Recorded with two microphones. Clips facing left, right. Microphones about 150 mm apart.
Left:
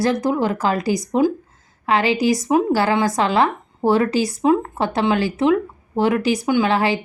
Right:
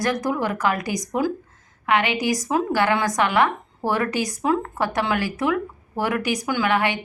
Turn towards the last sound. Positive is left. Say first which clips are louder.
# left 4 dB
turn(degrees=30)  # may be behind; listen again after turning